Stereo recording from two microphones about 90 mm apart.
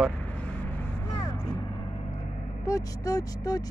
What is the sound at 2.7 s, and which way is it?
Speech, 40° left (ahead or behind).